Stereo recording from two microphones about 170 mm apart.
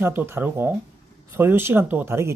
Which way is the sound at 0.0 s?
10° right (ahead or behind).